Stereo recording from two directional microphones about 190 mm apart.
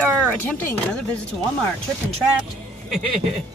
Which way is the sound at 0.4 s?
10° left (ahead or behind).